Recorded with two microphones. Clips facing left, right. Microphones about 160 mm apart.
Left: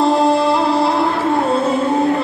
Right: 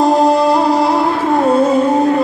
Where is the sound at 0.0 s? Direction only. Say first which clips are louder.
Right 3 dB; 45° right (ahead or behind).